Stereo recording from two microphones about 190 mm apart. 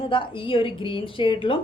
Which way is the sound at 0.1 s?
25° left (ahead or behind).